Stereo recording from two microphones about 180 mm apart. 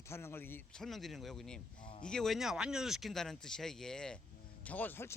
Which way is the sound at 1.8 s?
25° left (ahead or behind).